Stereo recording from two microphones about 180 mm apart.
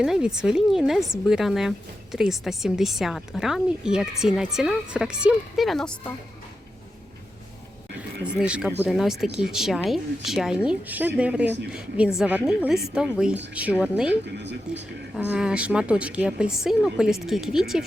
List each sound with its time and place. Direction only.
0.0 s speech: 5° right (ahead or behind)
8.2 s speech: 5° right (ahead or behind)